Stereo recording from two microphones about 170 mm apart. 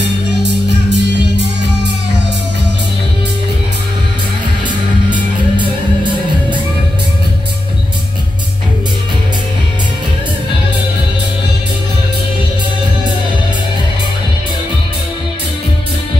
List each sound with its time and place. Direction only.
0.9 s music: 90° right